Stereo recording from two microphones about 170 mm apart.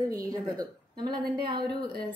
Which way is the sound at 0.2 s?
20° right (ahead or behind).